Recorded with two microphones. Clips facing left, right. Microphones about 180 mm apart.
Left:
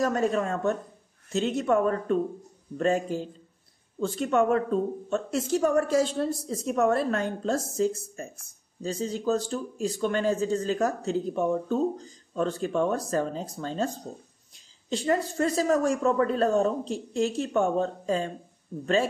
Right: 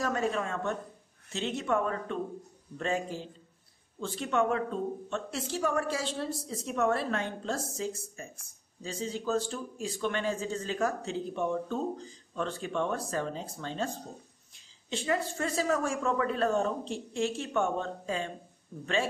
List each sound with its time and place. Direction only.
0.0 s speech: 40° left (ahead or behind)
14.9 s speech: 40° left (ahead or behind)